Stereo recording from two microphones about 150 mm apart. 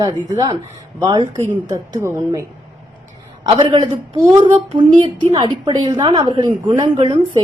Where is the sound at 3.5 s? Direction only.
30° right (ahead or behind).